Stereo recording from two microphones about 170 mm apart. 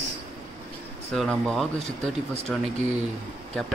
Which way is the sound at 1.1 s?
Centre (ahead or behind).